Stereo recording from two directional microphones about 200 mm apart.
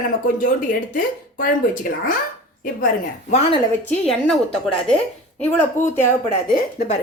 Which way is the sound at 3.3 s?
35° left (ahead or behind).